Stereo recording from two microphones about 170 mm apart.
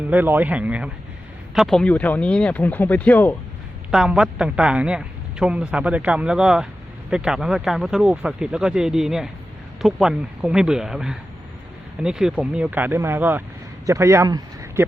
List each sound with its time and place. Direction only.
0.1 s speech: 10° right (ahead or behind); by 3.3 s 10° left (ahead or behind)
3.9 s a man's voice: 5° right (ahead or behind); by 14.8 s 20° right (ahead or behind)